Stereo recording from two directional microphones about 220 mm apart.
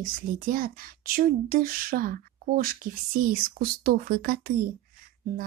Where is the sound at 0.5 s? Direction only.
40° right (ahead or behind).